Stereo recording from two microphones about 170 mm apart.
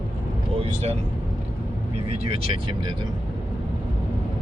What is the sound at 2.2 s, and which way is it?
Speech, 35° right (ahead or behind).